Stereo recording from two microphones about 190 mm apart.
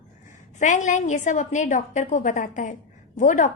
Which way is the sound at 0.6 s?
40° left (ahead or behind).